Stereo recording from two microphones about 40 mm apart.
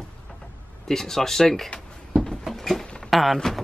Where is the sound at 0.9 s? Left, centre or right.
Centre.